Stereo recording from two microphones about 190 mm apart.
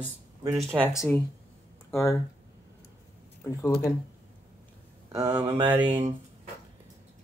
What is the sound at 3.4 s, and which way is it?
Speech, 15° left (ahead or behind).